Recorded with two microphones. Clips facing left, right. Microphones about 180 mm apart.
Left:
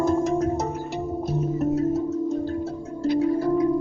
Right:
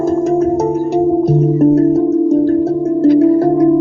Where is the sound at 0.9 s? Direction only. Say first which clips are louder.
Right 16 dB; 70° right (ahead or behind).